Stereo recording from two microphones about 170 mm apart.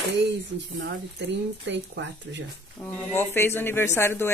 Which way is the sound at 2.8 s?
10° left (ahead or behind).